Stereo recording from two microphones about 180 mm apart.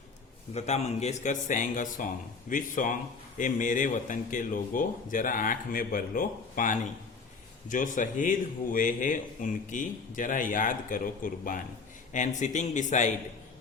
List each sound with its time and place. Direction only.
0.5 s speech: 35° left (ahead or behind)